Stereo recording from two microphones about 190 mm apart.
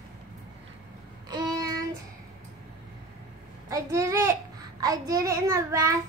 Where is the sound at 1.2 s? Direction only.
20° right (ahead or behind).